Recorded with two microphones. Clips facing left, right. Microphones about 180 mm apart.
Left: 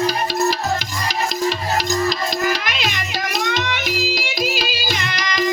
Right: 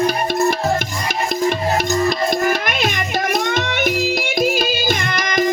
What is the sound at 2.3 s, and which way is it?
Music, 55° right (ahead or behind).